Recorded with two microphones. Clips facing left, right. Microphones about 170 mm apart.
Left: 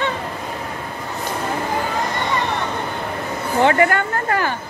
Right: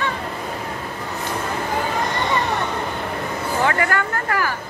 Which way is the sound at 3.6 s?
25° left (ahead or behind).